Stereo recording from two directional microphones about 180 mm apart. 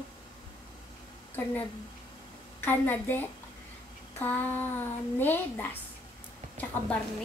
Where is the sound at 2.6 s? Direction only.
10° left (ahead or behind).